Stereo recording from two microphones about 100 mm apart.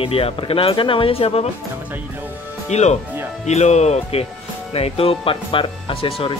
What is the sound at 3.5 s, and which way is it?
Speech, 90° left.